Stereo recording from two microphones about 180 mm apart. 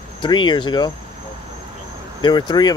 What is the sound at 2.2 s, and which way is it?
Speech, 25° left (ahead or behind).